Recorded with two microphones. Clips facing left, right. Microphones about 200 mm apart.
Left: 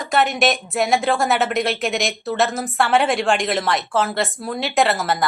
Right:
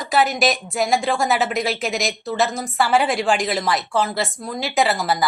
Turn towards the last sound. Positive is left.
turn(degrees=0)  # may be behind; listen again after turning